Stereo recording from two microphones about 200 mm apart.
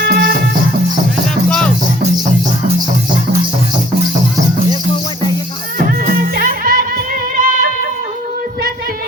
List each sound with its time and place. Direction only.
0.0 s music: 50° right (ahead or behind)
1.5 s music: centre (ahead or behind)
5.8 s music: 50° right (ahead or behind)